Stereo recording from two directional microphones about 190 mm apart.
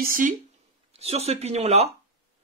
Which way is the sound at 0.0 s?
45° right (ahead or behind).